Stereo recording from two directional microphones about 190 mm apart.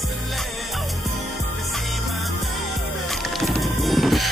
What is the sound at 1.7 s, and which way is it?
Music, centre (ahead or behind).